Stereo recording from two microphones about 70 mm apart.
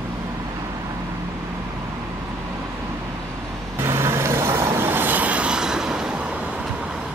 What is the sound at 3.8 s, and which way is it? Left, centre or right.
Vehicle, right.